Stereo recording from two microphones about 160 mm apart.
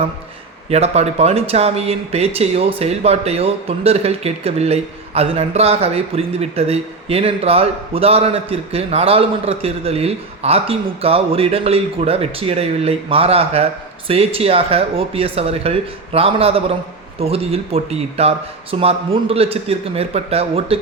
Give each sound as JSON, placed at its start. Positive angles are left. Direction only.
{"t": 0.7, "sound": "speech", "side_deg": -40}